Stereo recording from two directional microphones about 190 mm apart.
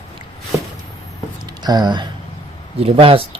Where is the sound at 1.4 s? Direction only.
20° right (ahead or behind).